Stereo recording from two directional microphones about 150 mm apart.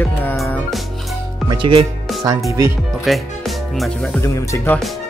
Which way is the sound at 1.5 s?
35° right (ahead or behind).